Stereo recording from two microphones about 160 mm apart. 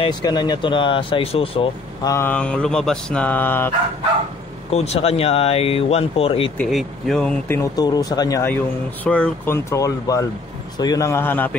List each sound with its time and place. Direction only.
0.0 s speech: 25° left (ahead or behind)
2.0 s speech: 15° left (ahead or behind)
4.6 s speech: 40° left (ahead or behind)
6.6 s speech: centre (ahead or behind); by 8.5 s 20° left (ahead or behind)
9.0 s speech: 10° left (ahead or behind)
9.7 s speech: 20° left (ahead or behind)